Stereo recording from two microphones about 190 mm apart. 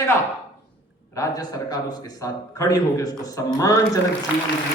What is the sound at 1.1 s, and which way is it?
A man's voice, 20° left (ahead or behind).